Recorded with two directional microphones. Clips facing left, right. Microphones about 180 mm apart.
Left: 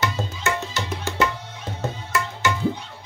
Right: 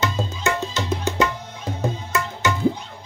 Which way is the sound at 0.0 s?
20° right (ahead or behind).